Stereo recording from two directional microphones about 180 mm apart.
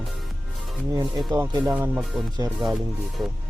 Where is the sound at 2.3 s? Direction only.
20° right (ahead or behind).